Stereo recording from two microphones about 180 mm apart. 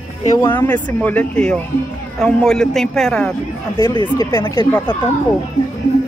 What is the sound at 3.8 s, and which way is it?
Speech, 20° left (ahead or behind).